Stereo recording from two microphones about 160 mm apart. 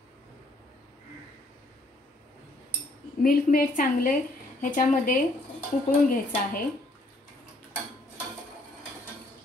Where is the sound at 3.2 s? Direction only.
60° left (ahead or behind).